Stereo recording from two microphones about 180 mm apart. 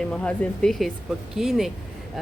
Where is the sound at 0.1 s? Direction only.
5° left (ahead or behind).